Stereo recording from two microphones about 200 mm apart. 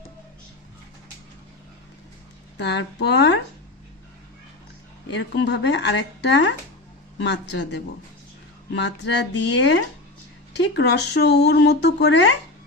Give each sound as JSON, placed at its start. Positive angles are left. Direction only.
{"t": 2.6, "sound": "speech", "side_deg": 60}
{"t": 5.1, "sound": "speech", "side_deg": 60}